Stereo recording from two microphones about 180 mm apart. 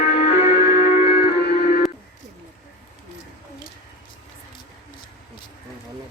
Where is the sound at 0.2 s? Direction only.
35° left (ahead or behind).